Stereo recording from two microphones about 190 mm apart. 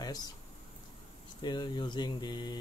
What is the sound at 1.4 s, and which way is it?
Speech, 20° left (ahead or behind).